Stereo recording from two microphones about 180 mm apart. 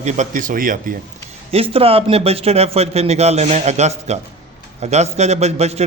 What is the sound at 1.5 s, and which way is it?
A man's voice, 30° right (ahead or behind).